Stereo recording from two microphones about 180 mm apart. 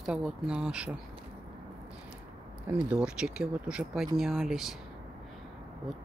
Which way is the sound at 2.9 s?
5° right (ahead or behind).